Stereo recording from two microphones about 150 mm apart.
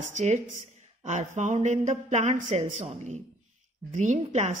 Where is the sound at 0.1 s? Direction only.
50° right (ahead or behind).